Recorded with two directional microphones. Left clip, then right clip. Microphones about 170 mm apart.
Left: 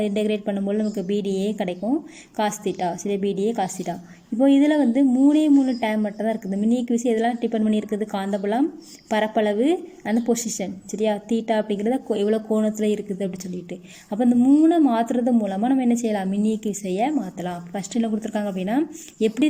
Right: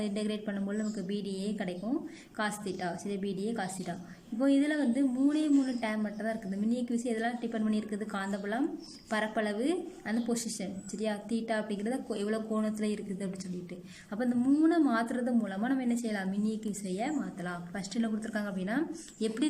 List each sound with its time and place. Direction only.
0.0 s speech: 20° left (ahead or behind)